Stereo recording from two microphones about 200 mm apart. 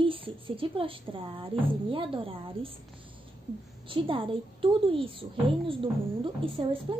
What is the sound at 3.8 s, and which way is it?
A child's voice, 25° right (ahead or behind).